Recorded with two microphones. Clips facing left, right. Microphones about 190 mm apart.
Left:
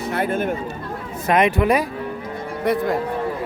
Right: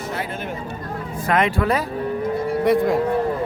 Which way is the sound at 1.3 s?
20° left (ahead or behind).